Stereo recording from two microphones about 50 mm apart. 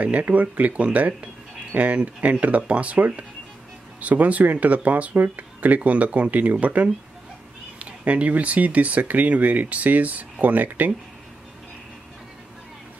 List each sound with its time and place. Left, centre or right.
0.0 s speech: right